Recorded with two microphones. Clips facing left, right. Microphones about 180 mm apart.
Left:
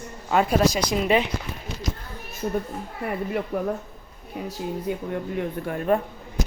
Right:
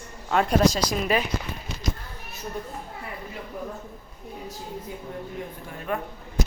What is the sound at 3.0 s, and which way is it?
Speech, 65° left (ahead or behind).